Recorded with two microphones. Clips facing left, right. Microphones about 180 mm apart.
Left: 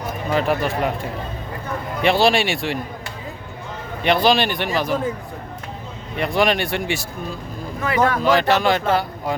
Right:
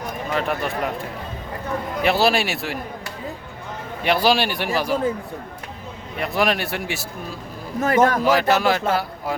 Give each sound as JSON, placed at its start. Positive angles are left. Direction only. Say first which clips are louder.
{"t": 0.3, "sound": "speech", "louder": "left 4 dB", "side_deg": 0}
{"t": 2.0, "sound": "speech", "louder": "left 2 dB", "side_deg": -5}
{"t": 4.0, "sound": "a man's voice", "louder": "left 2 dB", "side_deg": -5}
{"t": 6.1, "sound": "speech", "louder": "left 3 dB", "side_deg": 0}
{"t": 7.8, "sound": "speech", "louder": "right 2 dB", "side_deg": -45}
{"t": 8.2, "sound": "speech", "louder": "left 1 dB", "side_deg": -5}